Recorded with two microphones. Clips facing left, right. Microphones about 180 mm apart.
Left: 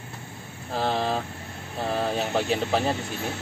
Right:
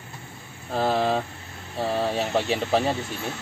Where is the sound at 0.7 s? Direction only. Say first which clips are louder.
Right 3 dB; centre (ahead or behind).